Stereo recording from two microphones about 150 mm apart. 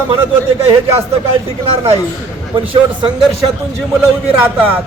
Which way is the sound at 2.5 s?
35° right (ahead or behind).